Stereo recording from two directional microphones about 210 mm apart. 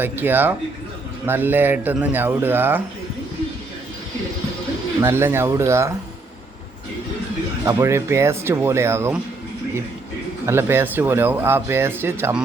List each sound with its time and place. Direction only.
0.0 s speech: 10° right (ahead or behind)
4.9 s speech: 10° right (ahead or behind)
7.6 s speech: 15° right (ahead or behind)
10.4 s speech: 10° right (ahead or behind)